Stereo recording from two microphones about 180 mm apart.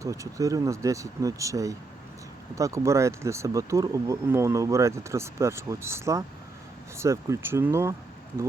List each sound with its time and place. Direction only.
0.0 s speech: 20° right (ahead or behind)